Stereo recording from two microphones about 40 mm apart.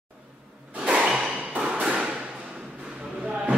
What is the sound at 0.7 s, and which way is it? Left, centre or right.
Whip, right.